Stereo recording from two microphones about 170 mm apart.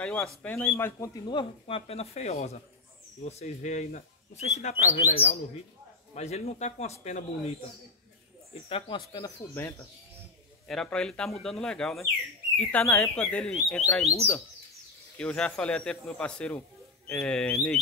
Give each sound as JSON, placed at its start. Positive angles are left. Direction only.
{"t": 0.0, "sound": "a man's voice", "side_deg": 5}
{"t": 8.6, "sound": "speech", "side_deg": 35}
{"t": 9.5, "sound": "speech", "side_deg": 15}
{"t": 15.1, "sound": "speech", "side_deg": 5}